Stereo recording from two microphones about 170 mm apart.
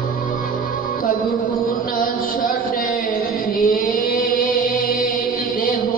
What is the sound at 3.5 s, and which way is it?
Music, 55° left (ahead or behind).